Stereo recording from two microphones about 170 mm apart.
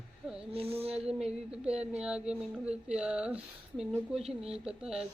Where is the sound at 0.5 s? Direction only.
35° right (ahead or behind).